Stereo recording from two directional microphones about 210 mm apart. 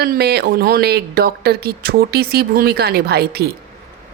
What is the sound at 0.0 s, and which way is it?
Speech, 50° right (ahead or behind).